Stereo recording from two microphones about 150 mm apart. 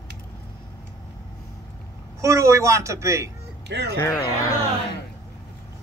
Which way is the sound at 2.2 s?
20° right (ahead or behind).